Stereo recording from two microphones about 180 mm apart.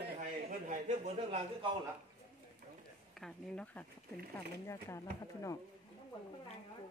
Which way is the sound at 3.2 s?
5° left (ahead or behind).